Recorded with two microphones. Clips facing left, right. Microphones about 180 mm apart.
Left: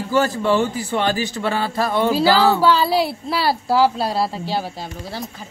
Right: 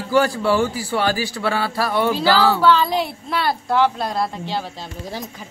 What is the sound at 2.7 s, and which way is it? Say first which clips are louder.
Speech: left 1 dB; 35° left (ahead or behind).